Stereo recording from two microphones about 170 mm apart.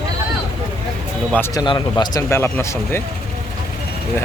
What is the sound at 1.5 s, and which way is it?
Speech, 25° left (ahead or behind).